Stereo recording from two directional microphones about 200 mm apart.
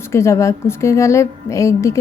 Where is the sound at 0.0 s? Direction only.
15° left (ahead or behind).